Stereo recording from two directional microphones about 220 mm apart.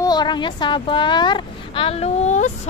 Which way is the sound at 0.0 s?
20° left (ahead or behind).